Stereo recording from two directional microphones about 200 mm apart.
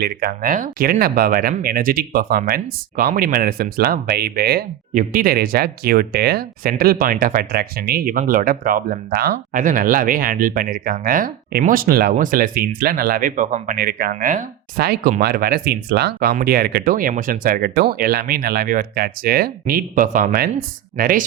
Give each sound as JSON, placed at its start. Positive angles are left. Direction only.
{"t": 0.0, "sound": "speech", "side_deg": -50}
{"t": 13.7, "sound": "speech", "side_deg": -50}
{"t": 14.1, "sound": "speech", "side_deg": -40}